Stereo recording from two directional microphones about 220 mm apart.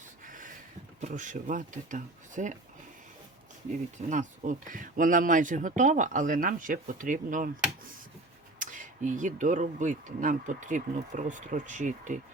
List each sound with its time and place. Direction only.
0.3 s a sound: 35° right (ahead or behind)
1.0 s speech: 35° right (ahead or behind)
3.7 s speech: 35° right (ahead or behind)